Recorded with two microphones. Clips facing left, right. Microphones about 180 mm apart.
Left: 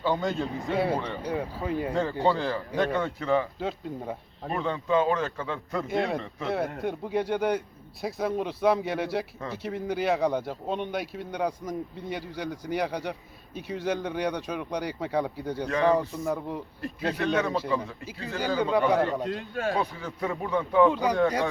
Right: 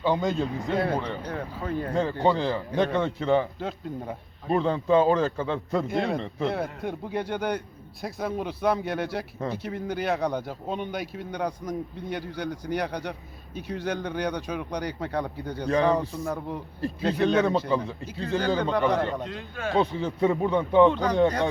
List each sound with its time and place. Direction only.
0.0 s speech: 20° right (ahead or behind)
0.7 s speech: centre (ahead or behind)
1.6 s speech: 15° left (ahead or behind)
2.2 s speech: 15° right (ahead or behind)
2.7 s speech: centre (ahead or behind)
3.0 s speech: 30° right (ahead or behind)
3.6 s speech: centre (ahead or behind)
4.5 s a man's voice: 35° right (ahead or behind)
5.9 s speech: centre (ahead or behind)
19.3 s speech: 40° left (ahead or behind)
19.7 s speech: 25° right (ahead or behind)